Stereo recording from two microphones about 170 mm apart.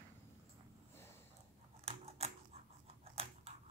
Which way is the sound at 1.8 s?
35° right (ahead or behind).